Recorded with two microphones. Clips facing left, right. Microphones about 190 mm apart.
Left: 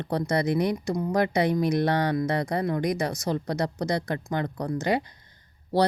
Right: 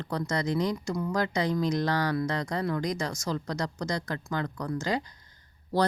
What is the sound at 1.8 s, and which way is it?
Speech, 25° left (ahead or behind).